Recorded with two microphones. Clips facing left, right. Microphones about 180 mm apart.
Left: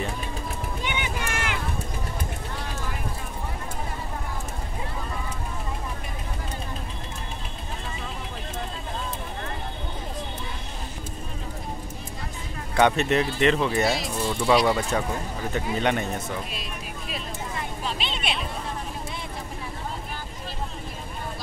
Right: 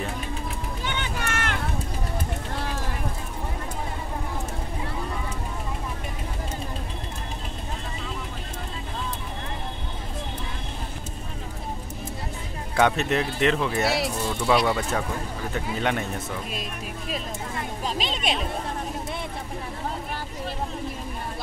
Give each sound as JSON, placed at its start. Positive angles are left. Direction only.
{"t": 0.8, "sound": "vehicle", "side_deg": 15}
{"t": 12.7, "sound": "speech", "side_deg": 0}
{"t": 17.8, "sound": "speech", "side_deg": -40}